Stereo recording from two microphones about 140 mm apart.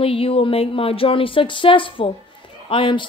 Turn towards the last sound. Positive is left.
turn(degrees=40)  # may be behind; listen again after turning